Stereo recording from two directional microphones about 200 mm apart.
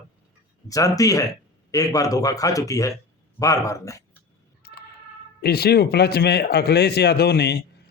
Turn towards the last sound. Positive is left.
turn(degrees=55)  # may be behind; listen again after turning